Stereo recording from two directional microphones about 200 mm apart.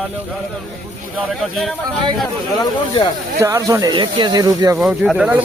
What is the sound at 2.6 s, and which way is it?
Speech, 25° left (ahead or behind).